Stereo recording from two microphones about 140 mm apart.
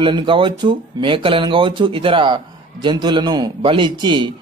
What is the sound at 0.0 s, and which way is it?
A man's voice, 35° right (ahead or behind).